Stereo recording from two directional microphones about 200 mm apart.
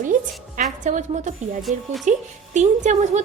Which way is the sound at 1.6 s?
Centre (ahead or behind).